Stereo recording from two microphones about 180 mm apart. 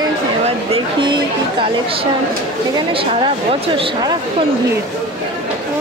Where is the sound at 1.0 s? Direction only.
25° right (ahead or behind).